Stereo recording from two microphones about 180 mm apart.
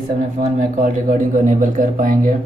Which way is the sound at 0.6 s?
50° right (ahead or behind).